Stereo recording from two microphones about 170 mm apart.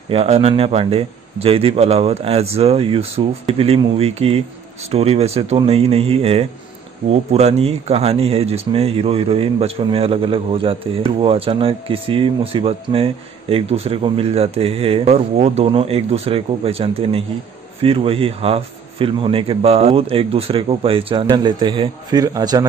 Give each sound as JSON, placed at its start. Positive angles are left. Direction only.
{"t": 0.1, "sound": "speech", "side_deg": -35}